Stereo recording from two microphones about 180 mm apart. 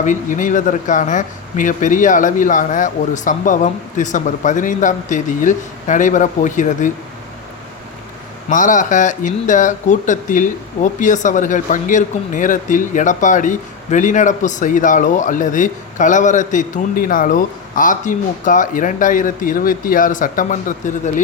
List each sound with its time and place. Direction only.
0.0 s speech: 45° left (ahead or behind)
8.4 s speech: 45° left (ahead or behind)